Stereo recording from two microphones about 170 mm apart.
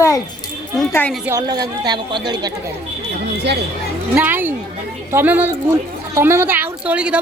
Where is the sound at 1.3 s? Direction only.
25° right (ahead or behind).